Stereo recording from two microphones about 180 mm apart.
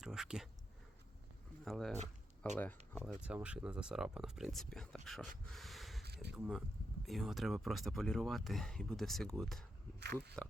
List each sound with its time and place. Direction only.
0.0 s a sound: 5° right (ahead or behind)
1.6 s speech: centre (ahead or behind)
3.2 s speech: 5° right (ahead or behind)
5.5 s a sound: centre (ahead or behind)
6.3 s speech: centre (ahead or behind)
10.0 s speech: 65° right (ahead or behind)